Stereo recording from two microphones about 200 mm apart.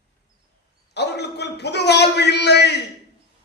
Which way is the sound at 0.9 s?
55° left (ahead or behind).